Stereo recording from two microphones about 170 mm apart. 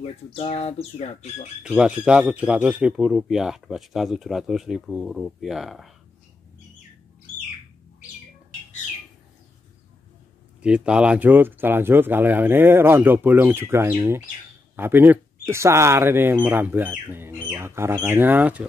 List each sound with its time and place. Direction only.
0.0 s speech: 30° left (ahead or behind)
1.6 s speech: 5° right (ahead or behind)
10.6 s speech: 5° right (ahead or behind)